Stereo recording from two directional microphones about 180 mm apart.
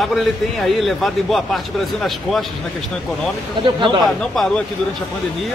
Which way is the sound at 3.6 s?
25° right (ahead or behind).